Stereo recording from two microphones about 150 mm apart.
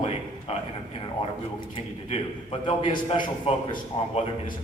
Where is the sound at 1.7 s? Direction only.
40° left (ahead or behind).